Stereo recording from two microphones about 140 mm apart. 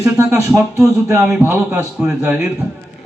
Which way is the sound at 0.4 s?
20° right (ahead or behind).